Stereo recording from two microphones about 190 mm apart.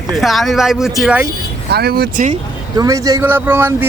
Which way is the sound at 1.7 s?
55° right (ahead or behind).